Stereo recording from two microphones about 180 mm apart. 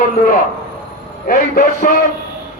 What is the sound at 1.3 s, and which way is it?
Speech, 55° left (ahead or behind).